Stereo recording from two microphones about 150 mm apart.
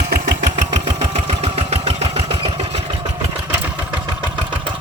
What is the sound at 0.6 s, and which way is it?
Engine, 45° right (ahead or behind).